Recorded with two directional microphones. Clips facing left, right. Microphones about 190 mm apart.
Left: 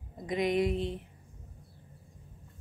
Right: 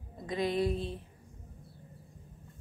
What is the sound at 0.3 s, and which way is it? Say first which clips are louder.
Speech: left 2 dB; 20° left (ahead or behind).